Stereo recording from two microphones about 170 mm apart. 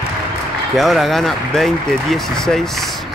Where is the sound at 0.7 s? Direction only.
Centre (ahead or behind).